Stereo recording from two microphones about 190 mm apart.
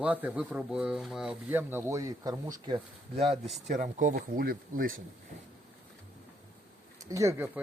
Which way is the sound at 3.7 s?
40° right (ahead or behind).